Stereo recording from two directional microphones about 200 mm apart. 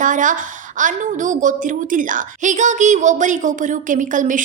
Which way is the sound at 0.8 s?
40° right (ahead or behind).